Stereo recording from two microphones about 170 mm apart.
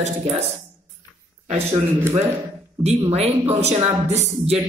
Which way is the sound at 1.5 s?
35° right (ahead or behind).